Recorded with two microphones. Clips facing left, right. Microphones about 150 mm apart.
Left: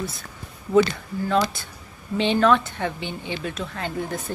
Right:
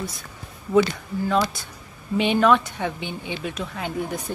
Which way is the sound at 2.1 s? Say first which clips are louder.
Even; 10° right (ahead or behind).